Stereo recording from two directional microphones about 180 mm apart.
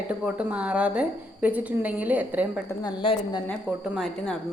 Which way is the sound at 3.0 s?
30° left (ahead or behind).